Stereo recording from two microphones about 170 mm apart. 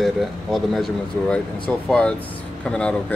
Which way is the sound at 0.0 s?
Centre (ahead or behind).